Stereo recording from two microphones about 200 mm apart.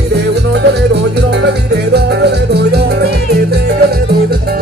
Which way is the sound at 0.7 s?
55° right (ahead or behind).